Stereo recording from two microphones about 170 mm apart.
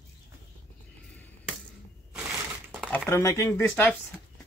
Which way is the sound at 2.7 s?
Centre (ahead or behind).